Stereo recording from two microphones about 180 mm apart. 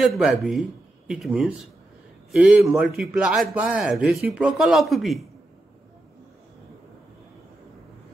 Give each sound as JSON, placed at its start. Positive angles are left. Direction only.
{"t": 0.0, "sound": "a man's voice", "side_deg": 0}